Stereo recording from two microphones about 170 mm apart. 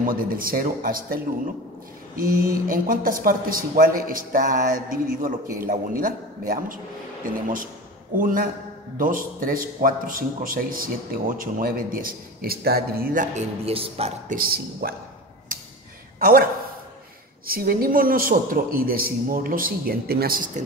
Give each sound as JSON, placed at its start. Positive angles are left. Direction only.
{"t": 0.0, "sound": "a man's voice", "side_deg": -55}
{"t": 8.2, "sound": "a man's voice", "side_deg": -55}
{"t": 13.7, "sound": "a man's voice", "side_deg": -35}
{"t": 14.3, "sound": "a man's voice", "side_deg": -60}
{"t": 17.5, "sound": "a man's voice", "side_deg": -60}